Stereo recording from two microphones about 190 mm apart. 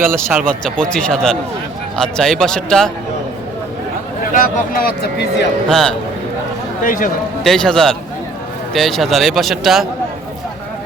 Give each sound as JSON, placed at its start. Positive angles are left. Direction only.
{"t": 0.1, "sound": "speech", "side_deg": -10}
{"t": 0.6, "sound": "speech", "side_deg": 5}
{"t": 4.4, "sound": "speech", "side_deg": 45}
{"t": 5.6, "sound": "speech", "side_deg": 5}
{"t": 6.8, "sound": "speech", "side_deg": 45}
{"t": 7.4, "sound": "speech", "side_deg": 5}